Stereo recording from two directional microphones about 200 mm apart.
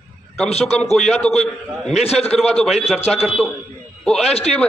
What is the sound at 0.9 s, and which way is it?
Speech, centre (ahead or behind).